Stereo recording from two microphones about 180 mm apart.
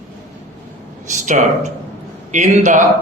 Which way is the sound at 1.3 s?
45° right (ahead or behind).